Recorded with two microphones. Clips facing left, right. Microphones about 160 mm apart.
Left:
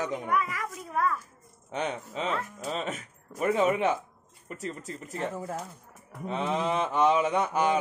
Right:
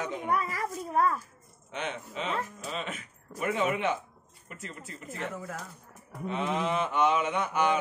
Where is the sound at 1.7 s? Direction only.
40° left (ahead or behind).